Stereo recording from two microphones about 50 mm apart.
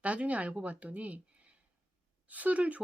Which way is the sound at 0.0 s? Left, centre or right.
Right.